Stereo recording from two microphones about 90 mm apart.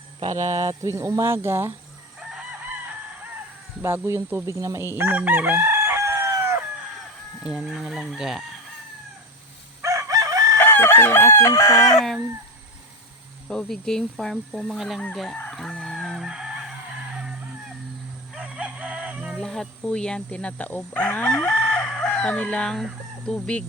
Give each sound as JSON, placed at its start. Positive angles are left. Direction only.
{"t": 0.9, "sound": "speech", "side_deg": -35}
{"t": 3.8, "sound": "speech", "side_deg": -25}
{"t": 4.5, "sound": "chicken", "side_deg": -35}
{"t": 7.4, "sound": "speech", "side_deg": -5}
{"t": 9.8, "sound": "chicken", "side_deg": -35}
{"t": 10.6, "sound": "chicken", "side_deg": 25}
{"t": 11.9, "sound": "speech", "side_deg": 5}
{"t": 13.5, "sound": "speech", "side_deg": 5}
{"t": 15.4, "sound": "chicken", "side_deg": 10}
{"t": 19.4, "sound": "speech", "side_deg": 5}